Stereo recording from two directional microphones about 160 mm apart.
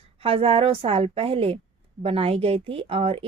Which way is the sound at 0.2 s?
35° right (ahead or behind).